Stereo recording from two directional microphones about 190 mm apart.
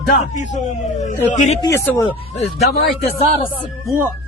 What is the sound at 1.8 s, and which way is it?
Speech, 10° left (ahead or behind).